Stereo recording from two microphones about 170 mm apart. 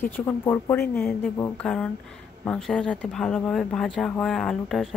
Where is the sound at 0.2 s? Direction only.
15° left (ahead or behind).